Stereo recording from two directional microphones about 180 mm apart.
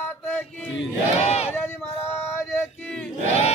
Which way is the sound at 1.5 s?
10° left (ahead or behind).